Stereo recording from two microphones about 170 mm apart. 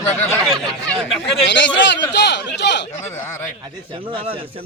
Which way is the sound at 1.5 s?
90° left.